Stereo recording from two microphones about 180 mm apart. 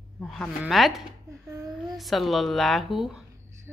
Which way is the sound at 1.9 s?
Centre (ahead or behind).